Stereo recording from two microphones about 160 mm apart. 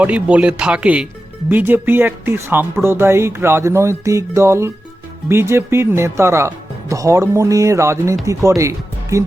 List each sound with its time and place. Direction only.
0.0 s speech: 10° right (ahead or behind)